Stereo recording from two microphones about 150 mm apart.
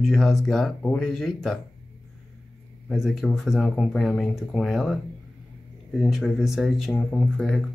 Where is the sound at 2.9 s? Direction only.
Centre (ahead or behind).